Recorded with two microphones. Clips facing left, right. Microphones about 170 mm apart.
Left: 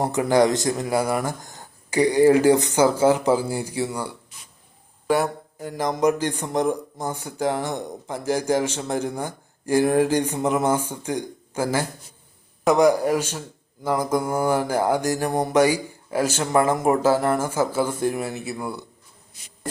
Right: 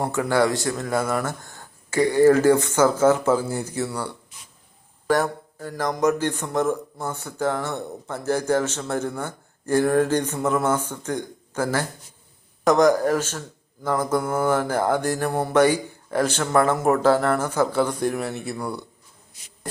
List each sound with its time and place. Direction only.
0.0 s a man's voice: 15° left (ahead or behind)